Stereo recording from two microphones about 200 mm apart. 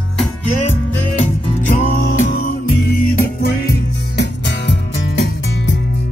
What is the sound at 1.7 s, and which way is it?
Music, 40° left (ahead or behind).